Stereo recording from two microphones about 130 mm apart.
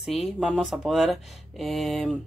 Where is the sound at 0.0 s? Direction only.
Centre (ahead or behind).